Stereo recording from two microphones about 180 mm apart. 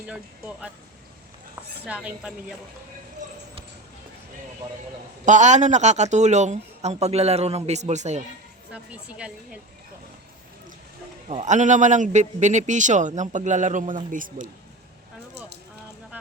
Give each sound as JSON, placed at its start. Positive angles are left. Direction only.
{"t": 0.1, "sound": "speech", "side_deg": -5}
{"t": 1.9, "sound": "speech", "side_deg": -5}
{"t": 5.2, "sound": "speech", "side_deg": -40}
{"t": 8.7, "sound": "a woman's voice", "side_deg": -5}
{"t": 11.3, "sound": "a man's voice", "side_deg": -40}